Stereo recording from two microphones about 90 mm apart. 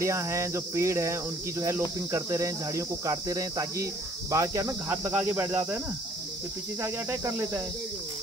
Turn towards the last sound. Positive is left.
turn(degrees=-25)  # may be behind; listen again after turning